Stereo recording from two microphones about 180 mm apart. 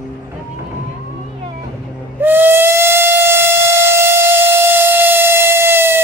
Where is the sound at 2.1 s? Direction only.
10° right (ahead or behind).